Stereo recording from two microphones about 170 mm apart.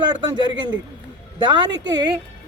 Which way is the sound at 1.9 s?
25° right (ahead or behind).